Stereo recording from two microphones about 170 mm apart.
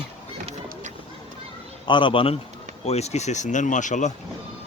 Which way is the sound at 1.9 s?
30° left (ahead or behind).